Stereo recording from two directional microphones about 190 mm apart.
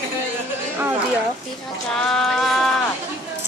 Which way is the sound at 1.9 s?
Centre (ahead or behind).